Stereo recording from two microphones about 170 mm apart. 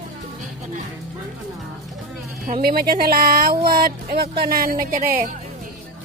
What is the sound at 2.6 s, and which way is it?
Speech, 60° right (ahead or behind).